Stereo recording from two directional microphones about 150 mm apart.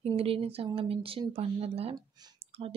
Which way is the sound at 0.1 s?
40° right (ahead or behind).